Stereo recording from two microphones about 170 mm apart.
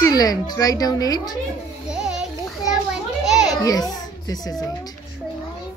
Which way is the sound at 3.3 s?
5° right (ahead or behind).